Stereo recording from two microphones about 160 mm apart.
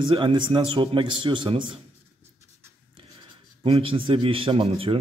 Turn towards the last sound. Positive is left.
turn(degrees=-35)  # may be behind; listen again after turning